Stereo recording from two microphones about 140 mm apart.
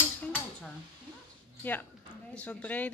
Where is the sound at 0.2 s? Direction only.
5° left (ahead or behind).